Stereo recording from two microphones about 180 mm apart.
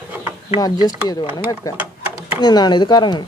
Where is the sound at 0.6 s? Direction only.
20° left (ahead or behind).